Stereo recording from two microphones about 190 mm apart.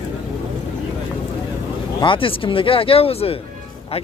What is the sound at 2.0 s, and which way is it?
Speech, 25° left (ahead or behind).